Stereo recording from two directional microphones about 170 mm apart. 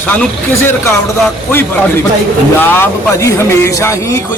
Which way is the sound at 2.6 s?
10° left (ahead or behind).